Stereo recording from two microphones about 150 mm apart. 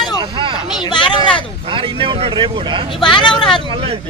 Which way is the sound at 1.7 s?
35° right (ahead or behind).